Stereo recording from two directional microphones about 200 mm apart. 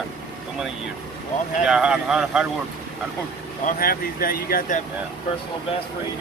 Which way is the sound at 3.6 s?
45° left (ahead or behind).